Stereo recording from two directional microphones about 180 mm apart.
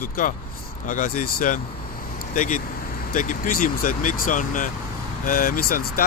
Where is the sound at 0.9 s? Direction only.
45° left (ahead or behind).